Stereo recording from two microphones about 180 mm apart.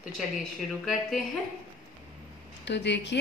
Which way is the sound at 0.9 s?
Centre (ahead or behind).